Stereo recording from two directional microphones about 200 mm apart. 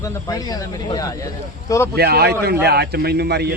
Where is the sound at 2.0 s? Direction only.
55° right (ahead or behind).